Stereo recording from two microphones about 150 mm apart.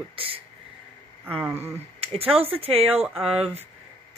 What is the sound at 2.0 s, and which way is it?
Speech, 40° right (ahead or behind).